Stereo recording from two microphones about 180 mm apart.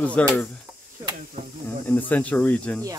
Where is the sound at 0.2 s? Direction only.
5° left (ahead or behind).